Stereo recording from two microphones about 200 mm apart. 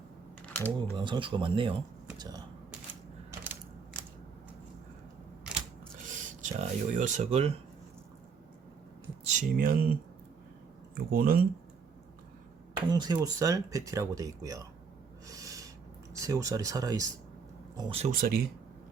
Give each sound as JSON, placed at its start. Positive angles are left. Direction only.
{"t": 0.5, "sound": "speech", "side_deg": 10}
{"t": 0.9, "sound": "speech", "side_deg": -25}
{"t": 3.3, "sound": "mechanisms", "side_deg": -10}
{"t": 6.1, "sound": "speech", "side_deg": -40}
{"t": 9.2, "sound": "speech", "side_deg": -40}
{"t": 12.9, "sound": "speech", "side_deg": -20}
{"t": 15.3, "sound": "a sound", "side_deg": -15}
{"t": 16.2, "sound": "speech", "side_deg": -15}
{"t": 18.1, "sound": "speech", "side_deg": -45}